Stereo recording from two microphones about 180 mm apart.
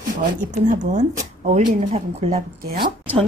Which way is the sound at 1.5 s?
40° right (ahead or behind).